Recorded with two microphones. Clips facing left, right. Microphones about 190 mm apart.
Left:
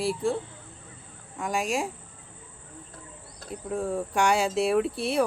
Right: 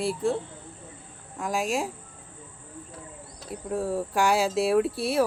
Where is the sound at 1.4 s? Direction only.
Centre (ahead or behind).